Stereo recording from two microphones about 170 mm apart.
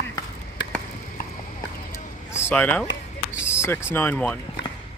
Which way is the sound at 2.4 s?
10° left (ahead or behind).